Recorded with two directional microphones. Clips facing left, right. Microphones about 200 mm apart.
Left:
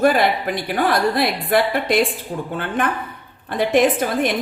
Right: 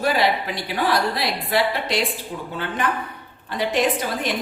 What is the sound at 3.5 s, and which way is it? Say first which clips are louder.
Speech: left 5 dB; 55° left (ahead or behind).